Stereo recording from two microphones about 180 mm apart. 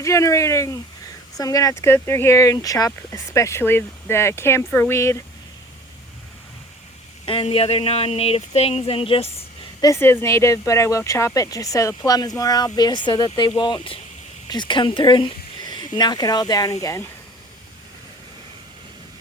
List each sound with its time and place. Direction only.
0.0 s speech: 15° left (ahead or behind)
7.3 s speech: 30° left (ahead or behind)
9.8 s speech: 15° left (ahead or behind)